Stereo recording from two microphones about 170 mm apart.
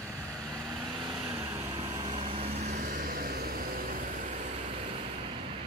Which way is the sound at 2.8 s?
55° right (ahead or behind).